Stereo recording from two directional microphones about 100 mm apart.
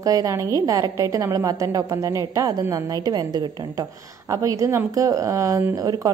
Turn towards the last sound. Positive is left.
turn(degrees=-40)  # may be behind; listen again after turning